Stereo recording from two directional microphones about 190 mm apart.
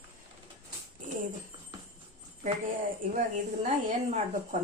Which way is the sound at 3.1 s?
40° right (ahead or behind).